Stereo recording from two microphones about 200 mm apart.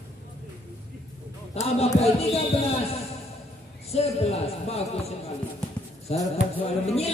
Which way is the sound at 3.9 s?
30° left (ahead or behind).